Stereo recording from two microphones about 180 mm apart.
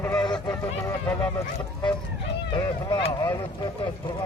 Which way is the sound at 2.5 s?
25° left (ahead or behind).